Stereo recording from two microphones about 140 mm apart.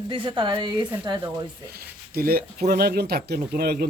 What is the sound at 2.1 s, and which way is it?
Speech, 90° right.